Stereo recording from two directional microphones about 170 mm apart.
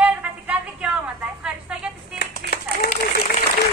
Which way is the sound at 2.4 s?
65° right (ahead or behind).